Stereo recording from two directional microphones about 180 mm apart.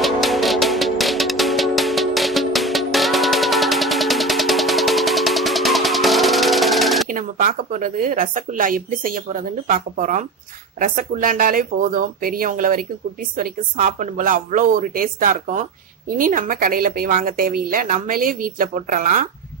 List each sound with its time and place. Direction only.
0.0 s music: centre (ahead or behind)
7.1 s speech: 50° right (ahead or behind)